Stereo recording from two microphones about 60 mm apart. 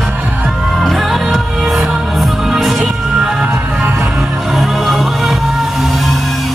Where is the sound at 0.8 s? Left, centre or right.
Centre.